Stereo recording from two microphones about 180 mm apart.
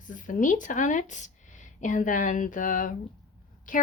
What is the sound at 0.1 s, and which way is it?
Speech, 45° left (ahead or behind).